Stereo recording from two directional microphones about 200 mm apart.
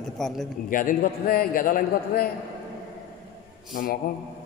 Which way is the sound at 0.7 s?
45° left (ahead or behind).